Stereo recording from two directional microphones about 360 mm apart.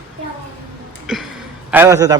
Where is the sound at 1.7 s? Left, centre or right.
Centre.